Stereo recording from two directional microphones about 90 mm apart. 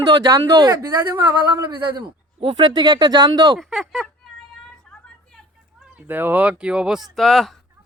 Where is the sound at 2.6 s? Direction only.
55° right (ahead or behind).